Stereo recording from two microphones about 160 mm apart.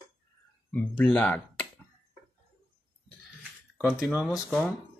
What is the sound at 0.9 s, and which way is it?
Speech, 10° left (ahead or behind).